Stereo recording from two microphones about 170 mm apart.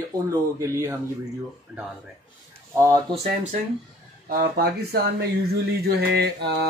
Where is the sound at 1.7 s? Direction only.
5° right (ahead or behind).